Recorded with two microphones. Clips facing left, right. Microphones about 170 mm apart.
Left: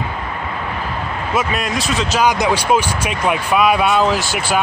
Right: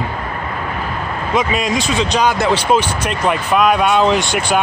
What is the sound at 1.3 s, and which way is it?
Speech, centre (ahead or behind).